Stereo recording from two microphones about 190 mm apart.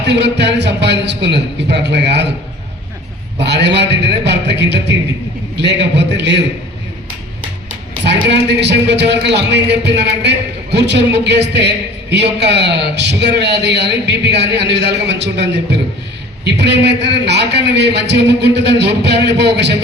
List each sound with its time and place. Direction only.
0.0 s speech: 65° right (ahead or behind)
3.4 s speech: 65° right (ahead or behind)
8.3 s speech: 65° right (ahead or behind)